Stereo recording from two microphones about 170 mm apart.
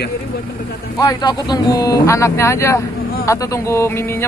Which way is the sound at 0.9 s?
20° left (ahead or behind).